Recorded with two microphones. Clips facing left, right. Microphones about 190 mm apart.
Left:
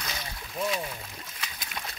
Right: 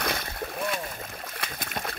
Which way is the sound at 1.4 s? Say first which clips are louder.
Right 5 dB; 55° right (ahead or behind).